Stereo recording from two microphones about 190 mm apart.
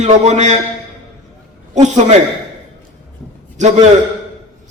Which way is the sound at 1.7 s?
40° right (ahead or behind).